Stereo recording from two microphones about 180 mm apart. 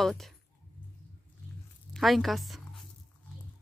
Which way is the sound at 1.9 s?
Centre (ahead or behind).